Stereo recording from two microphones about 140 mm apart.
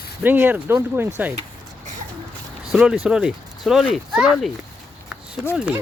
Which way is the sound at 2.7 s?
5° right (ahead or behind).